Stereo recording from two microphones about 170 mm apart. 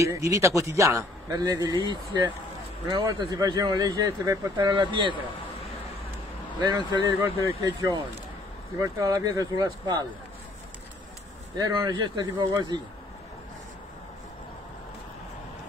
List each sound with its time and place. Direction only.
0.0 s a man's voice: 20° right (ahead or behind)
6.6 s a man's voice: 25° right (ahead or behind)
11.5 s a man's voice: 25° right (ahead or behind)